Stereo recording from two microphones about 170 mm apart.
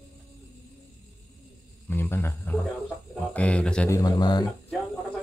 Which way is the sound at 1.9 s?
15° left (ahead or behind).